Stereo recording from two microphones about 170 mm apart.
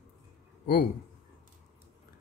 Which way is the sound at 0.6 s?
60° left (ahead or behind).